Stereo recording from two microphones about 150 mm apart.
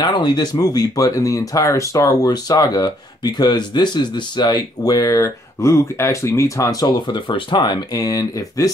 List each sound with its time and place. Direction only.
0.0 s speech: 30° left (ahead or behind)